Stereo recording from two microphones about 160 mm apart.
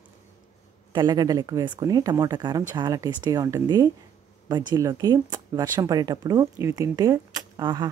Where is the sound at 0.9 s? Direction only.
25° right (ahead or behind).